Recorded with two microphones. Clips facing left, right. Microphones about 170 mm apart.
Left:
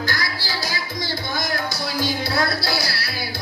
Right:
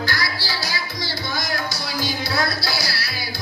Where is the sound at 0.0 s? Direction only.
45° left (ahead or behind).